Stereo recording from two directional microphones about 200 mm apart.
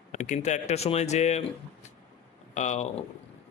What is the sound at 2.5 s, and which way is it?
Speech, 35° left (ahead or behind).